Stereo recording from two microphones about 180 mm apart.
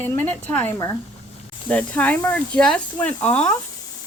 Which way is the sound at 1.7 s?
10° left (ahead or behind).